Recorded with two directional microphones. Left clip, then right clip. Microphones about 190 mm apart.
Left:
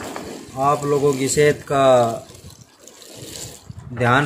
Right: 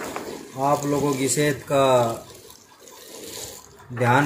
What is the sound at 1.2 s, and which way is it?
Speech, 60° left (ahead or behind).